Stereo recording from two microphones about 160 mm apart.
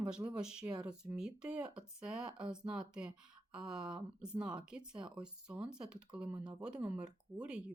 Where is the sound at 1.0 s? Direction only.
5° right (ahead or behind).